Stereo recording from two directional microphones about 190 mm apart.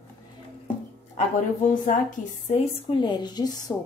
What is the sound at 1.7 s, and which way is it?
A woman's voice, 45° left (ahead or behind).